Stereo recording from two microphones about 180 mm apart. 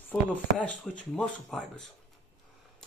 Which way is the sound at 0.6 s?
10° left (ahead or behind).